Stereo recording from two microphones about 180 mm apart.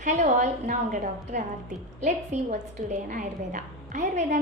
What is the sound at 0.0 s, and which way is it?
A woman's voice, 40° right (ahead or behind).